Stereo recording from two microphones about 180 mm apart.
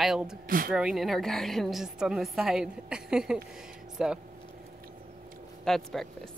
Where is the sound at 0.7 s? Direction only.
5° right (ahead or behind).